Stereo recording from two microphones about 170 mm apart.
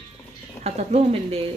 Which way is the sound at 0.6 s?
40° right (ahead or behind).